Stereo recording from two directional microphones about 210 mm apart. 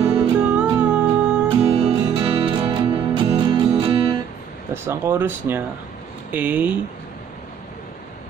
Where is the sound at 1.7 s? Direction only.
25° right (ahead or behind).